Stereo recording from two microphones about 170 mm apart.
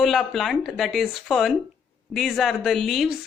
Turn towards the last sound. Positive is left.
turn(degrees=0)  # may be behind; listen again after turning